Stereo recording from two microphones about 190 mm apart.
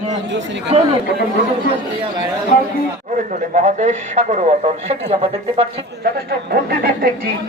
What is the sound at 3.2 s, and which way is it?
Speech, 40° right (ahead or behind).